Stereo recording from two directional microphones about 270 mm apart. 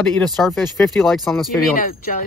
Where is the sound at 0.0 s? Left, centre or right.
Centre.